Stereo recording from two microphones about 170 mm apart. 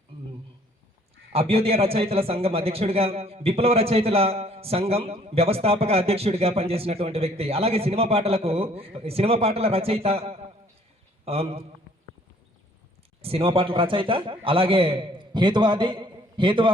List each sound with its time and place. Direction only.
1.3 s a man's voice: 35° right (ahead or behind)
13.2 s a man's voice: 35° right (ahead or behind)